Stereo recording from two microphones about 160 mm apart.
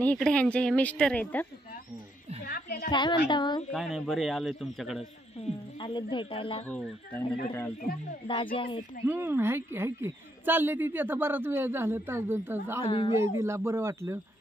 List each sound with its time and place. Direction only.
0.0 s speech: 5° left (ahead or behind)
2.4 s a sound: 65° left (ahead or behind)
2.9 s a woman's voice: 30° left (ahead or behind)
3.7 s speech: centre (ahead or behind)
5.4 s speech: 30° left (ahead or behind)
6.7 s speech: 10° left (ahead or behind)
7.8 s speech: 65° left (ahead or behind)
8.3 s speech: 35° left (ahead or behind)
9.0 s a woman's voice: 15° right (ahead or behind)
12.8 s speech: 35° left (ahead or behind)
13.4 s a woman's voice: 15° right (ahead or behind)